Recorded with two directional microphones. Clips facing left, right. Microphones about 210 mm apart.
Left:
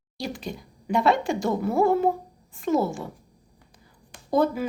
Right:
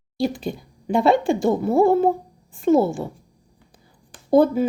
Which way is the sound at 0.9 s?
30° right (ahead or behind).